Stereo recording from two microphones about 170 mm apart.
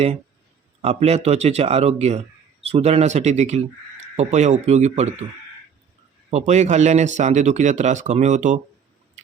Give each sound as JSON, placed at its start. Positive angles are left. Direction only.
{"t": 0.8, "sound": "speech", "side_deg": -40}
{"t": 6.3, "sound": "speech", "side_deg": -45}